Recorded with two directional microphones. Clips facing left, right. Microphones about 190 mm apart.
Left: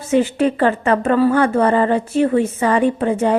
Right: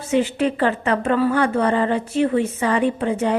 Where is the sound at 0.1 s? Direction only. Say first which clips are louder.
Left 3 dB; 45° left (ahead or behind).